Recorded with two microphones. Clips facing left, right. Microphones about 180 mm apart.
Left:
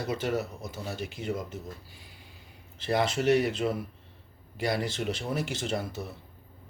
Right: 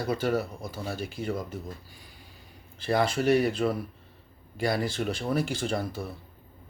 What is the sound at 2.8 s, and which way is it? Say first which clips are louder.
Speech: right 2 dB; 25° left (ahead or behind).